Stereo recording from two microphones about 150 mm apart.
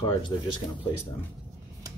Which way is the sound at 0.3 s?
25° left (ahead or behind).